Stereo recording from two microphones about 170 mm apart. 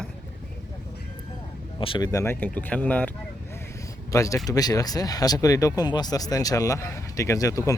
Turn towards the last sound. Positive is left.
turn(degrees=20)  # may be behind; listen again after turning